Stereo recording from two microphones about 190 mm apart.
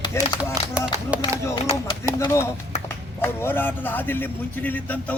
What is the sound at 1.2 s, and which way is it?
A man's voice, 20° left (ahead or behind).